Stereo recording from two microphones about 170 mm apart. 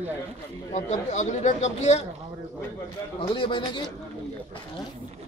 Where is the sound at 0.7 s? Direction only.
45° left (ahead or behind).